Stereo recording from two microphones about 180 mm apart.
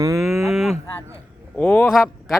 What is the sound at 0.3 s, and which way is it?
Cattle, centre (ahead or behind).